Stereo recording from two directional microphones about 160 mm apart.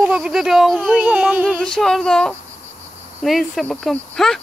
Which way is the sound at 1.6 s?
5° left (ahead or behind).